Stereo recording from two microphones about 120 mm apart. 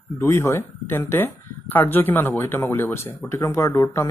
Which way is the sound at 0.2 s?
25° left (ahead or behind).